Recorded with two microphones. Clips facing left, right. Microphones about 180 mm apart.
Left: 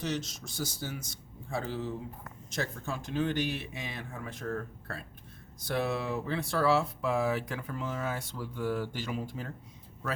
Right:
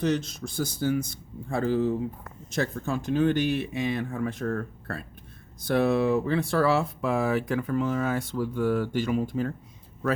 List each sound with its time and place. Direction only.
0.0 s speech: 55° right (ahead or behind)